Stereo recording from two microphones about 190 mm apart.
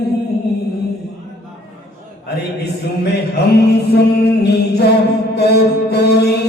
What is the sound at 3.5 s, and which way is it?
Music, 60° left (ahead or behind).